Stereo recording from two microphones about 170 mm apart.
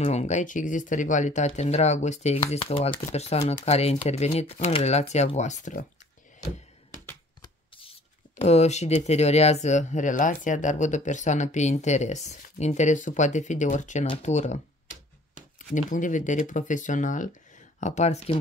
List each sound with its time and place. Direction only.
0.0 s speech: 40° left (ahead or behind)
8.4 s speech: 40° left (ahead or behind)
15.7 s speech: 50° left (ahead or behind)